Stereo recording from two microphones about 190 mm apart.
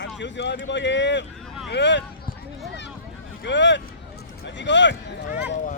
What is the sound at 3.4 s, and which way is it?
Speech, 70° left (ahead or behind).